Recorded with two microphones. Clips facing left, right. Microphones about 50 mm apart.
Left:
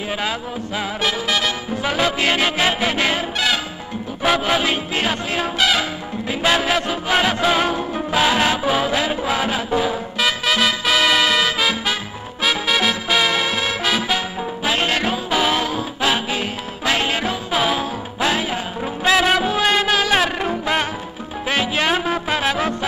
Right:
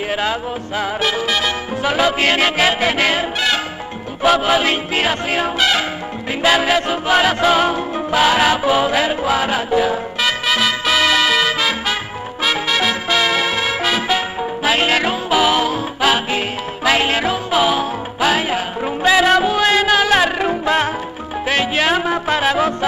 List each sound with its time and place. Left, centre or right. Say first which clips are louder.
0.1 s music: right 3 dB; centre
4.2 s music: right 4 dB; centre
20.2 s music: right 4 dB; centre
20.6 s music: right 4 dB; centre